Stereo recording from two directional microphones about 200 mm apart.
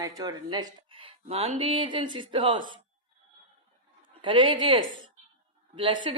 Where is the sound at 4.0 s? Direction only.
25° right (ahead or behind).